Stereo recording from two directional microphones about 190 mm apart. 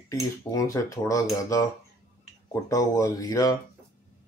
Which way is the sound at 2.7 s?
15° left (ahead or behind).